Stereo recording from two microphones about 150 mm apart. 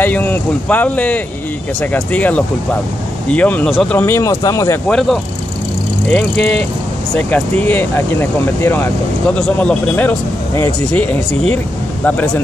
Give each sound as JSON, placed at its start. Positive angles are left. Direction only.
{"t": 0.0, "sound": "speech", "side_deg": 15}
{"t": 4.0, "sound": "speech", "side_deg": 15}
{"t": 4.8, "sound": "speech", "side_deg": 0}